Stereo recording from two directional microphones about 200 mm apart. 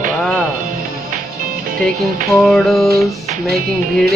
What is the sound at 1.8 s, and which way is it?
A man's voice, centre (ahead or behind).